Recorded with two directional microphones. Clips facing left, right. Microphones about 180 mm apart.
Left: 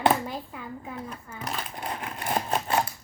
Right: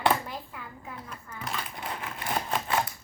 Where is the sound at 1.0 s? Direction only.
35° left (ahead or behind).